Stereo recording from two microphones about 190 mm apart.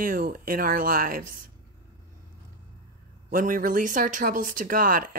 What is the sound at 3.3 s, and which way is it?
Speech, 45° right (ahead or behind).